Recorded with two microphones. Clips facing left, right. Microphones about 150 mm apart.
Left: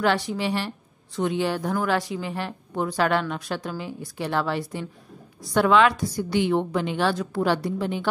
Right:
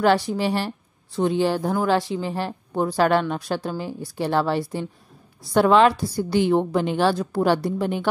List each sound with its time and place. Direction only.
0.0 s a woman's voice: 40° right (ahead or behind)